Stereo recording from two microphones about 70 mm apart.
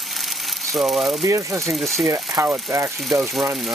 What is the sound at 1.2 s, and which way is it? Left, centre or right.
Speech, right.